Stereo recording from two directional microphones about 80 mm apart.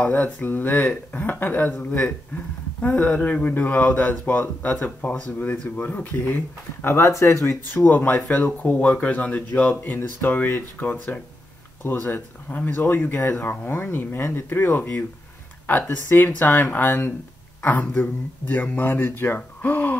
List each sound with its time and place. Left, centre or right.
0.0 s speech: left
6.9 s speech: left; by 9.8 s centre
9.8 s speech: left